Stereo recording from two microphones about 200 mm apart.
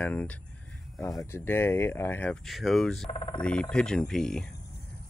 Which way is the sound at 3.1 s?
25° left (ahead or behind).